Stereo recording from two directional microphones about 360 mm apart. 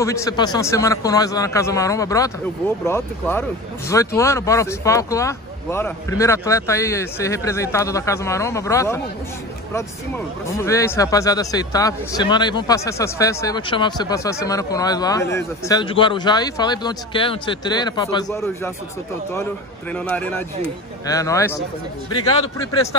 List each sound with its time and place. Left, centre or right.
0.0 s speech: centre
19.9 s speech: centre